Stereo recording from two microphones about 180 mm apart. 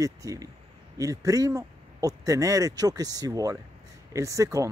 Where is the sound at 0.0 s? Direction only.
20° right (ahead or behind).